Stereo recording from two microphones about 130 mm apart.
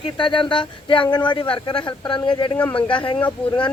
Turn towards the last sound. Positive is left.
turn(degrees=10)  # may be behind; listen again after turning